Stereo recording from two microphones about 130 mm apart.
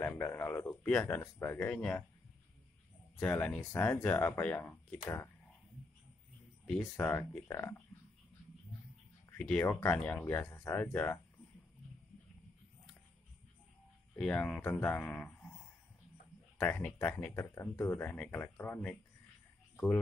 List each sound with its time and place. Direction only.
0.0 s speech: 15° left (ahead or behind)
3.2 s speech: 10° left (ahead or behind)
7.0 s speech: 15° left (ahead or behind)
9.4 s speech: 5° left (ahead or behind)
14.1 s speech: 5° left (ahead or behind)
16.5 s speech: 15° left (ahead or behind)